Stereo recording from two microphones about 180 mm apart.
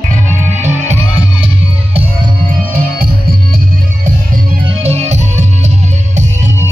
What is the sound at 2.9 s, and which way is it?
Music, 60° right (ahead or behind).